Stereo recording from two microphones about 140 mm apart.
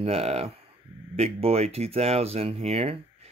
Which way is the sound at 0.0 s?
45° right (ahead or behind).